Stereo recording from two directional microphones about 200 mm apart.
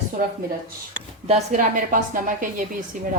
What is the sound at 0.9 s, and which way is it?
Speech, 35° right (ahead or behind).